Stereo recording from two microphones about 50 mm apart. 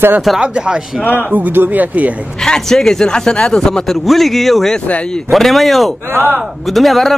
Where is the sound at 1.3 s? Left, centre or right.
Right.